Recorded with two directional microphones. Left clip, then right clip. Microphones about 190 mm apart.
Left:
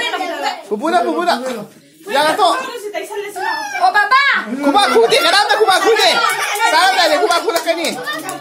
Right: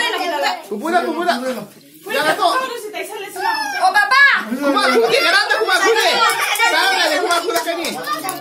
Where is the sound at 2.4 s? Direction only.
55° left (ahead or behind).